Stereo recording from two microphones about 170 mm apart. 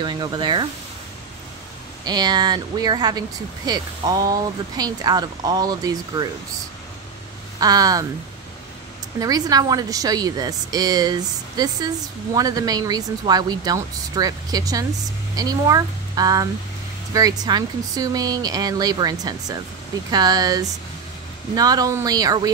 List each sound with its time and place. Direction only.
0.0 s speech: 25° right (ahead or behind)
2.0 s speech: 25° right (ahead or behind)
7.6 s speech: 20° right (ahead or behind)
9.2 s speech: 20° right (ahead or behind)